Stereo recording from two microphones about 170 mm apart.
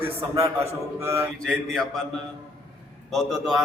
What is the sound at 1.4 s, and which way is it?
A man's voice, 5° left (ahead or behind).